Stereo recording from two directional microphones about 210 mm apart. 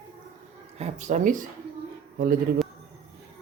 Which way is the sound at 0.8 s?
35° right (ahead or behind).